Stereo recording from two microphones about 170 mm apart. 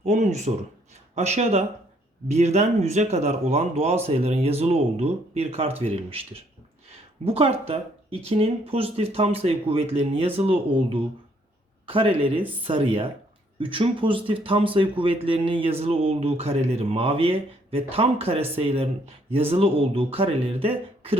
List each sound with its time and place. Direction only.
0.0 s speech: 45° right (ahead or behind)